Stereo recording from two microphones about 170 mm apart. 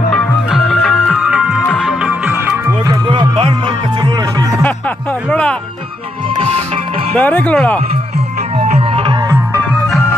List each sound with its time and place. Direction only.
0.1 s music: centre (ahead or behind)
3.1 s music: 30° right (ahead or behind)
5.3 s music: 5° left (ahead or behind)
6.3 s music: 35° right (ahead or behind)
7.2 s speech: 10° left (ahead or behind)
8.6 s tabla: 35° right (ahead or behind)
9.0 s music: 15° right (ahead or behind)